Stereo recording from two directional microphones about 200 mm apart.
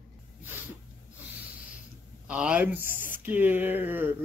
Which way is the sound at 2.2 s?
5° right (ahead or behind).